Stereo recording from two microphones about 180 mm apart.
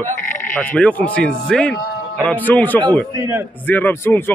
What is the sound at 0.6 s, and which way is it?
A man's voice, 10° left (ahead or behind).